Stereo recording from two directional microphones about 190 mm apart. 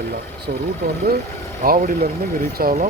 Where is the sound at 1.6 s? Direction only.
45° right (ahead or behind).